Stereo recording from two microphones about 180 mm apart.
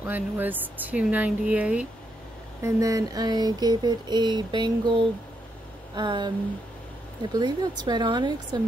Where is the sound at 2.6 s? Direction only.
20° right (ahead or behind).